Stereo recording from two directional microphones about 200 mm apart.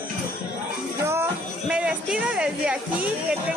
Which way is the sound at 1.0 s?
15° right (ahead or behind).